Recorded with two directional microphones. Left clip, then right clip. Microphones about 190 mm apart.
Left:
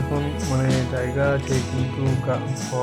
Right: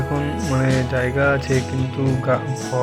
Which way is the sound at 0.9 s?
15° right (ahead or behind).